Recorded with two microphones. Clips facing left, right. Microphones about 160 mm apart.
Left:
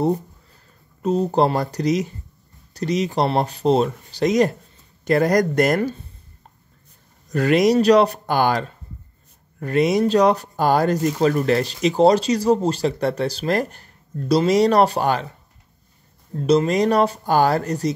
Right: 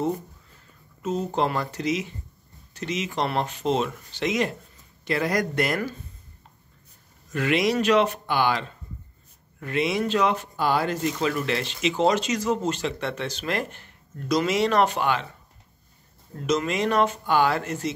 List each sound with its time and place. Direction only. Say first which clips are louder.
1.0 s speech: left 7 dB; 35° left (ahead or behind)
7.2 s speech: left 7 dB; 40° left (ahead or behind)
16.4 s speech: left 7 dB; 35° left (ahead or behind)